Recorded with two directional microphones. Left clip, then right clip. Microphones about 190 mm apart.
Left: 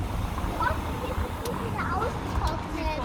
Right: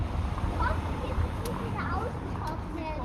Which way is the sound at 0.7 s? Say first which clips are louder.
Left 3 dB; 50° left (ahead or behind).